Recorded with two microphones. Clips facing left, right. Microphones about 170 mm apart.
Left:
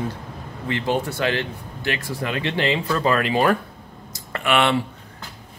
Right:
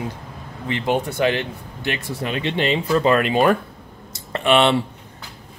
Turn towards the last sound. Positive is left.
turn(degrees=-25)  # may be behind; listen again after turning